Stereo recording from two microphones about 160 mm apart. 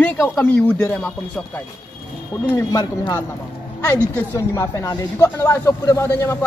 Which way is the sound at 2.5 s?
20° left (ahead or behind).